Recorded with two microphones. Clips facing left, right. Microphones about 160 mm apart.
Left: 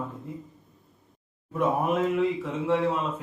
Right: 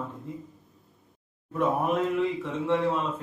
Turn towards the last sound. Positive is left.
turn(degrees=0)  # may be behind; listen again after turning